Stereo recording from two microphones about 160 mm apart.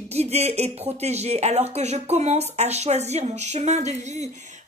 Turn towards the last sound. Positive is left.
turn(degrees=-45)  # may be behind; listen again after turning